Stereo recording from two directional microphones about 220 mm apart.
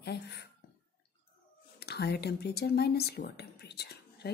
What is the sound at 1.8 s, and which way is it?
Speech, 45° left (ahead or behind).